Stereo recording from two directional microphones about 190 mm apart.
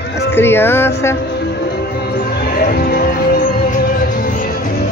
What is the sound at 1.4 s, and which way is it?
Music, 60° left (ahead or behind).